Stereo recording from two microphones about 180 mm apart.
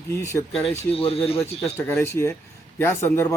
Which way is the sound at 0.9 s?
30° left (ahead or behind).